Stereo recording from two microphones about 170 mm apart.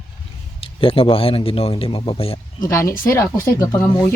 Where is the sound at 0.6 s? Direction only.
35° left (ahead or behind).